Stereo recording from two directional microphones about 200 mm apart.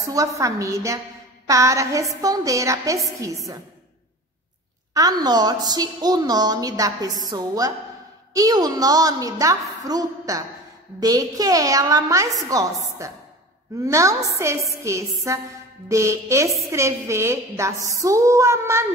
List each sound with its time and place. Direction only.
0.0 s a woman's voice: 15° right (ahead or behind)
4.9 s a woman's voice: 20° right (ahead or behind)